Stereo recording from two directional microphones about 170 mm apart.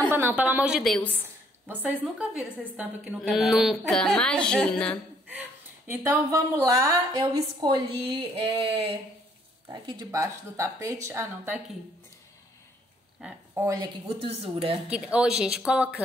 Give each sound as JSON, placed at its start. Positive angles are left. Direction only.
{"t": 0.1, "sound": "a woman's voice", "side_deg": -10}
{"t": 1.7, "sound": "a woman's voice", "side_deg": -10}
{"t": 5.3, "sound": "a woman's voice", "side_deg": -10}
{"t": 8.0, "sound": "a sound", "side_deg": -30}
{"t": 9.8, "sound": "a woman's voice", "side_deg": -20}
{"t": 13.6, "sound": "a woman's voice", "side_deg": -10}
{"t": 14.0, "sound": "a sound", "side_deg": -35}
{"t": 14.9, "sound": "a woman's voice", "side_deg": -5}